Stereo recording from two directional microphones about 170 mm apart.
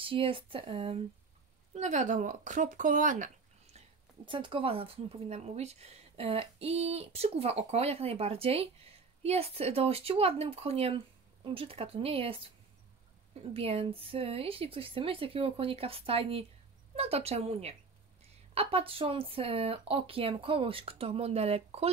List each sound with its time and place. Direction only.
0.0 s speech: 30° right (ahead or behind)
1.7 s speech: 45° right (ahead or behind)
4.3 s speech: 30° right (ahead or behind)
13.5 s speech: 35° right (ahead or behind)